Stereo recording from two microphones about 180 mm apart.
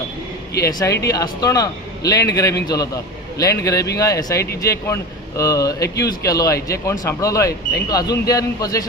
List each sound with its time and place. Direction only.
0.6 s a man's voice: 20° left (ahead or behind)